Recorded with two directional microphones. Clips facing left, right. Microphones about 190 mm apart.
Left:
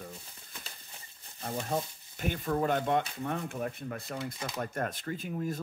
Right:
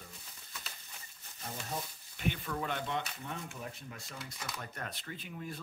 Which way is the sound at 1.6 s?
45° left (ahead or behind).